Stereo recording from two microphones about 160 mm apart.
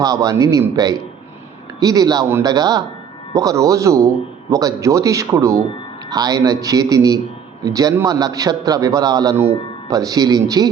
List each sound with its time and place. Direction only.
0.0 s a man's voice: 25° right (ahead or behind)